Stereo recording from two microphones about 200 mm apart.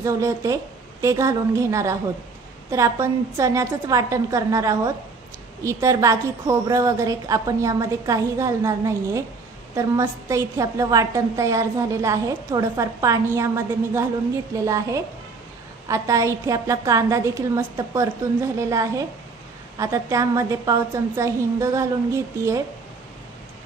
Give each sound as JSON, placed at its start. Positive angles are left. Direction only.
{"t": 0.0, "sound": "a woman's voice", "side_deg": -15}